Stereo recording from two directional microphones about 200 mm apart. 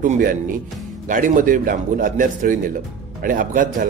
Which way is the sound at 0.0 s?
40° right (ahead or behind).